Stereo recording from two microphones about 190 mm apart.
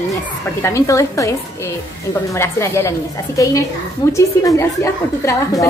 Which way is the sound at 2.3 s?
15° left (ahead or behind).